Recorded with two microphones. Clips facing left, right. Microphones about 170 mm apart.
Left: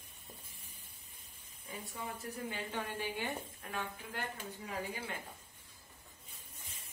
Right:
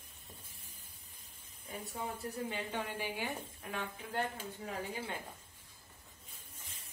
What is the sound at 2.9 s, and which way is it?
Speech, 10° right (ahead or behind).